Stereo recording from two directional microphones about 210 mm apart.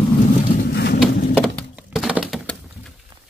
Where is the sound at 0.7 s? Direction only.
50° left (ahead or behind).